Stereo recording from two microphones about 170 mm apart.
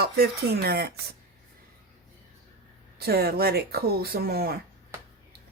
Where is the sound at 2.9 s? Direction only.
65° right (ahead or behind).